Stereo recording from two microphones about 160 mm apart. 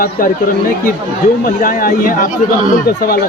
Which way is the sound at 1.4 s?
65° left (ahead or behind).